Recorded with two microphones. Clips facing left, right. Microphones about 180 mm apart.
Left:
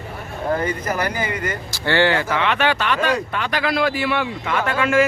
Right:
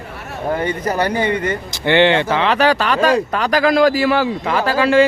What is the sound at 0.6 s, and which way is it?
Speech, 30° right (ahead or behind).